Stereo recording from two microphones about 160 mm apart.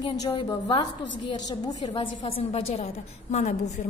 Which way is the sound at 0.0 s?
25° left (ahead or behind).